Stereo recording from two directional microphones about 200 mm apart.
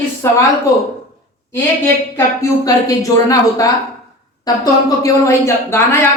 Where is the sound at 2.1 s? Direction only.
15° left (ahead or behind).